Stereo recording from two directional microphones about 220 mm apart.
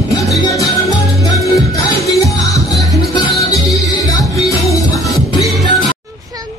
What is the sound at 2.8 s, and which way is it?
Music, centre (ahead or behind).